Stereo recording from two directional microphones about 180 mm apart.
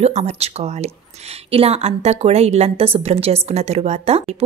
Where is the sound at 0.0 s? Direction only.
35° right (ahead or behind).